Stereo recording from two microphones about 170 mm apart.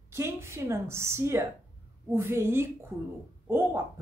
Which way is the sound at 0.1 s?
15° right (ahead or behind).